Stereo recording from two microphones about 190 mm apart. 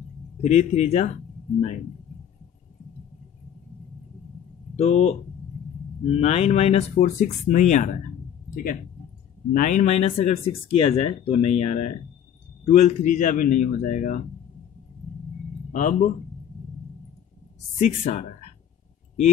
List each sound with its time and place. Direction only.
0.4 s speech: 35° left (ahead or behind)
4.7 s speech: 30° left (ahead or behind)
6.1 s speech: 35° left (ahead or behind)
9.5 s speech: 45° left (ahead or behind)
15.7 s speech: 45° left (ahead or behind)
17.7 s speech: 40° left (ahead or behind)